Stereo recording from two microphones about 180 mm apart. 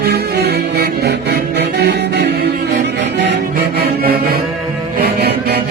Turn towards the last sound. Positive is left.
turn(degrees=-65)  # may be behind; listen again after turning